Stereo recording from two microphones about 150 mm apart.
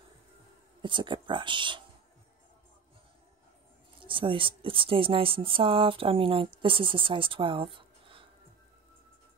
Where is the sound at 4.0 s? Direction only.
35° right (ahead or behind).